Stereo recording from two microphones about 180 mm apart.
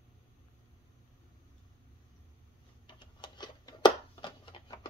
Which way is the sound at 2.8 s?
25° left (ahead or behind).